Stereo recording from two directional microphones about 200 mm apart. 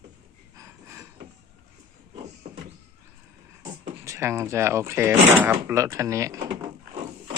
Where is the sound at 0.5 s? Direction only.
15° right (ahead or behind).